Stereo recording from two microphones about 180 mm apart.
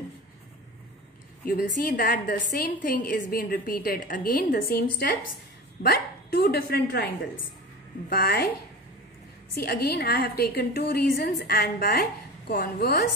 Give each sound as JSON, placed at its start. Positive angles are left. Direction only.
{"t": 1.4, "sound": "a woman's voice", "side_deg": 50}
{"t": 8.1, "sound": "a woman's voice", "side_deg": 55}
{"t": 9.6, "sound": "a woman's voice", "side_deg": 55}